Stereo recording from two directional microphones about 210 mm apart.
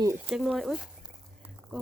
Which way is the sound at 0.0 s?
15° right (ahead or behind).